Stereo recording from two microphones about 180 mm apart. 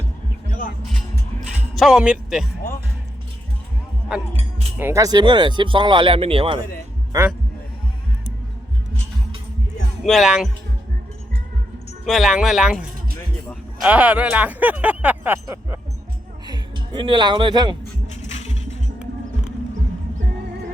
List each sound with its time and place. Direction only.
1.7 s speech: centre (ahead or behind)
4.8 s speech: 15° right (ahead or behind); by 6.6 s 30° right (ahead or behind)
7.1 s speech: 15° right (ahead or behind)
10.0 s speech: centre (ahead or behind)
12.0 s speech: centre (ahead or behind)
13.8 s speech: 10° right (ahead or behind)
16.5 s speech: 25° right (ahead or behind)
18.1 s music: 40° left (ahead or behind)